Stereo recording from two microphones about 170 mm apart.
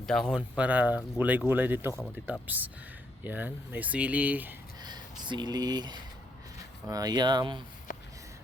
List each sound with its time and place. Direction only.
0.0 s speech: centre (ahead or behind)
3.2 s speech: 10° right (ahead or behind)
4.8 s speech: 25° right (ahead or behind)
7.9 s a sound: 50° left (ahead or behind)